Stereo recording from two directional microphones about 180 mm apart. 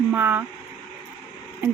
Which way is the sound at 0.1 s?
10° right (ahead or behind).